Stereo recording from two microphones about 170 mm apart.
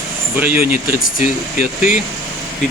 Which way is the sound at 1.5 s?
45° left (ahead or behind).